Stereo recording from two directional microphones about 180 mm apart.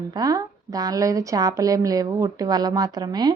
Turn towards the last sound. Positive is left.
turn(degrees=-20)  # may be behind; listen again after turning